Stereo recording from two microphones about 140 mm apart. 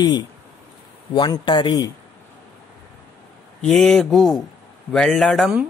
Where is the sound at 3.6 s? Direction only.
5° left (ahead or behind).